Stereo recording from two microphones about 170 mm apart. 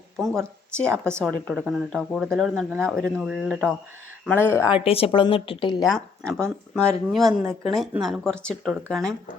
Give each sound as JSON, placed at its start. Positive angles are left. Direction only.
{"t": 0.2, "sound": "speech", "side_deg": 5}
{"t": 4.3, "sound": "speech", "side_deg": 10}
{"t": 4.7, "sound": "a woman's voice", "side_deg": 35}
{"t": 5.8, "sound": "speech", "side_deg": 0}